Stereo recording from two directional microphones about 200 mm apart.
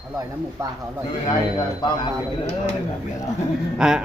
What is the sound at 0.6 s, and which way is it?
Speech, 15° right (ahead or behind).